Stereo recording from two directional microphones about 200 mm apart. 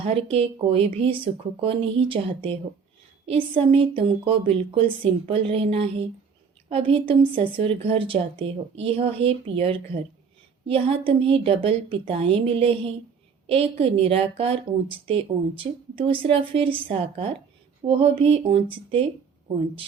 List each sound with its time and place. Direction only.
0.0 s a woman's voice: 30° right (ahead or behind)